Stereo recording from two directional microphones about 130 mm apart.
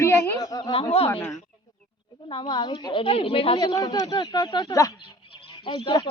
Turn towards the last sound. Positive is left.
turn(degrees=40)  # may be behind; listen again after turning